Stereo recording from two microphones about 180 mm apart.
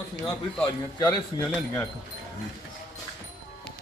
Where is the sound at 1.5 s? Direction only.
5° left (ahead or behind).